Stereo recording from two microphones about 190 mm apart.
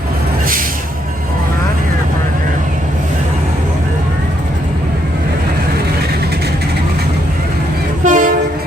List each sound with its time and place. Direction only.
8.0 s train: 45° right (ahead or behind)